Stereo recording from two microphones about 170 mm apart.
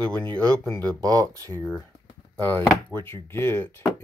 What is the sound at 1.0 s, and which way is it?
Speech, 20° right (ahead or behind).